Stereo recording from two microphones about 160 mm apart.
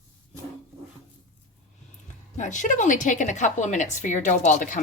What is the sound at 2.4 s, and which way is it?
A woman's voice, 50° left (ahead or behind).